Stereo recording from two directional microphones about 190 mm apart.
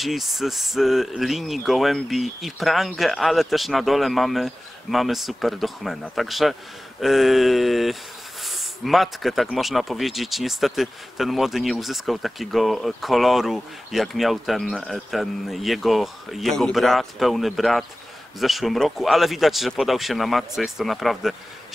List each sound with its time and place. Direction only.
0.0 s speech: centre (ahead or behind)